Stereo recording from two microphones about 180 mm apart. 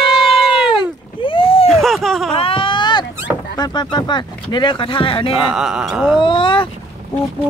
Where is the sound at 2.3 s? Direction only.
30° left (ahead or behind).